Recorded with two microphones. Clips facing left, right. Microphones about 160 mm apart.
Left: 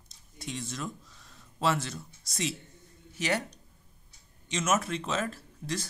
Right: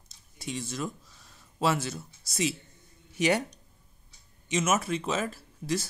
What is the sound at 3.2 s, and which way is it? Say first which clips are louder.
Speech: right 5 dB; 15° right (ahead or behind).